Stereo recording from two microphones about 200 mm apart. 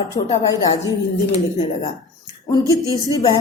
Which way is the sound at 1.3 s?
30° left (ahead or behind).